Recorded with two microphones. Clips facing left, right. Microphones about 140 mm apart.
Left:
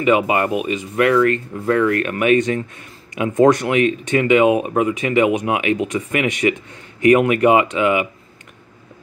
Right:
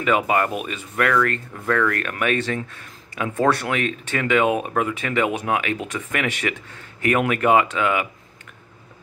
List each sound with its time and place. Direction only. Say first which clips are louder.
0.0 s speech: left 4 dB; 10° left (ahead or behind)